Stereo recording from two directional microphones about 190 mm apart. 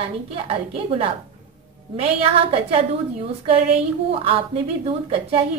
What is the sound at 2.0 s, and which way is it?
A woman's voice, 30° right (ahead or behind).